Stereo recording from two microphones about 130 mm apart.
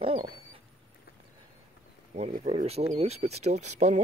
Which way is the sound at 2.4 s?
55° right (ahead or behind).